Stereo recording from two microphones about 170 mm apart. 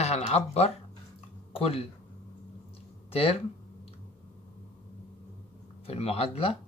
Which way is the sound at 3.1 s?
35° left (ahead or behind).